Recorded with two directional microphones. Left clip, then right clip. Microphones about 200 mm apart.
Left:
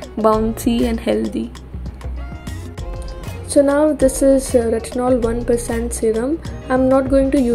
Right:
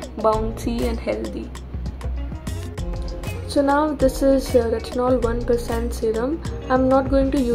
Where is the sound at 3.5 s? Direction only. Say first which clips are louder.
Left 5 dB; 15° left (ahead or behind).